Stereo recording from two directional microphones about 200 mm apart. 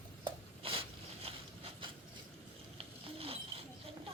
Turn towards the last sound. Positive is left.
turn(degrees=-30)  # may be behind; listen again after turning